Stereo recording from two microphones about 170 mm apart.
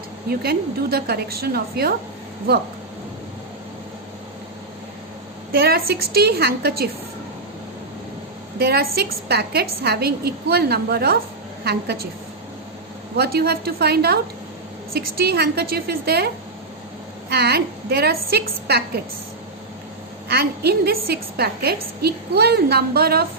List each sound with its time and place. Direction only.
0.3 s a woman's voice: 65° right (ahead or behind)
5.5 s a woman's voice: 65° right (ahead or behind)
8.5 s a woman's voice: 70° right (ahead or behind)
13.1 s a woman's voice: 70° right (ahead or behind)
20.2 s a woman's voice: 70° right (ahead or behind)